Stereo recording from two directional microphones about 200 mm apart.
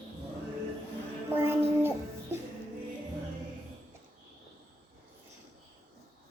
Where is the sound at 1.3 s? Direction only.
10° right (ahead or behind).